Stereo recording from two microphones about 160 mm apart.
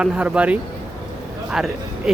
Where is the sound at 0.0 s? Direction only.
5° right (ahead or behind).